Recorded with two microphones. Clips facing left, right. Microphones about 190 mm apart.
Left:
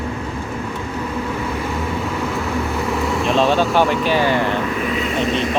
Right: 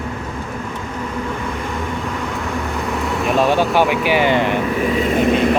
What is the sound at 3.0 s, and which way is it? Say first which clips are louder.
Vehicle: right 1 dB; centre (ahead or behind).